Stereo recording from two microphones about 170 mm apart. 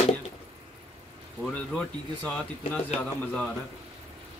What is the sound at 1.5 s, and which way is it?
Speech, 5° left (ahead or behind).